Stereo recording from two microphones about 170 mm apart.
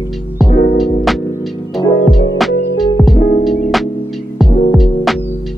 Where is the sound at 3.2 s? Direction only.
55° left (ahead or behind).